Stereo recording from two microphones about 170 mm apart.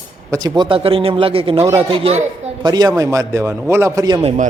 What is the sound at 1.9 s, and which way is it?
Speech, 35° right (ahead or behind).